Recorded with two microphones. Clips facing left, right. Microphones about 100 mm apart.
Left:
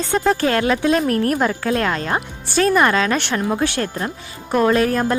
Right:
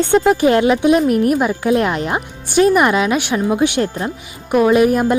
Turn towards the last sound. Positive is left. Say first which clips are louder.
# right 4 dB
turn(degrees=-15)  # may be behind; listen again after turning